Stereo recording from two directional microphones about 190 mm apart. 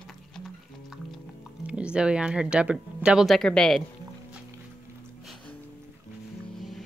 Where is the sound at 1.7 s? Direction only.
5° right (ahead or behind).